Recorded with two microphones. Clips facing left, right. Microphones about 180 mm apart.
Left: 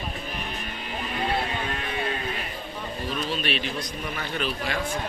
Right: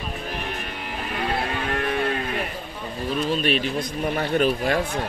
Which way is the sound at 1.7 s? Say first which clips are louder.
Right 7 dB; 60° right (ahead or behind).